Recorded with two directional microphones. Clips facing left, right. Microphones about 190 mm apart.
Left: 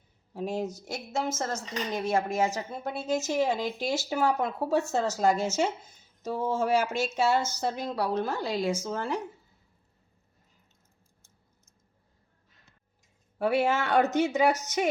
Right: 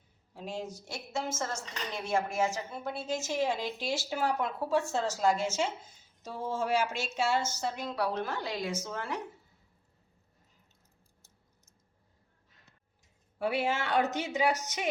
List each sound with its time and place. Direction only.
0.3 s a woman's voice: 40° left (ahead or behind)
13.4 s speech: 45° left (ahead or behind)